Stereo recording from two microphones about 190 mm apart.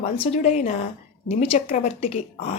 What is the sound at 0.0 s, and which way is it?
Speech, 35° left (ahead or behind).